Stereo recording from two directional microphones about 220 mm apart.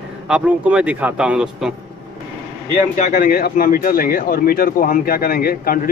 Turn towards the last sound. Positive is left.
turn(degrees=40)  # may be behind; listen again after turning